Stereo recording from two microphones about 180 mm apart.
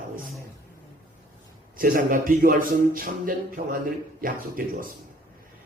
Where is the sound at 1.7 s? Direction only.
50° right (ahead or behind).